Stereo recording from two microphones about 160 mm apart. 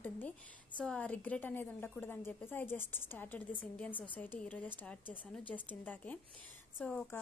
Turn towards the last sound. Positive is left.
turn(degrees=10)  # may be behind; listen again after turning